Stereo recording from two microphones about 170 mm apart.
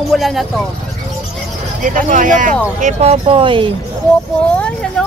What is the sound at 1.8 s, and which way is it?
Speech, 50° right (ahead or behind).